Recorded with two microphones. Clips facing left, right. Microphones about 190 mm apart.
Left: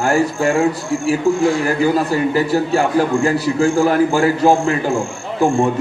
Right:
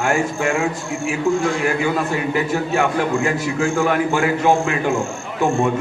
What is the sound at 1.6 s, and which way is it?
A man's voice, 35° left (ahead or behind).